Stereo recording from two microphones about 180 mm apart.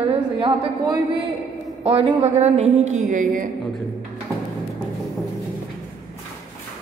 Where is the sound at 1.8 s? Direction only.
30° right (ahead or behind); by 3.5 s 45° right (ahead or behind).